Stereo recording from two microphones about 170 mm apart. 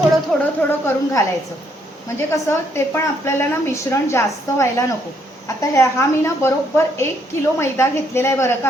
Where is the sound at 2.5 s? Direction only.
15° left (ahead or behind).